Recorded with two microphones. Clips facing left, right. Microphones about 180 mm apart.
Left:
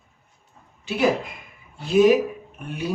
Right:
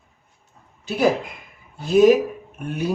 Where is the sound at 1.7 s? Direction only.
45° right (ahead or behind).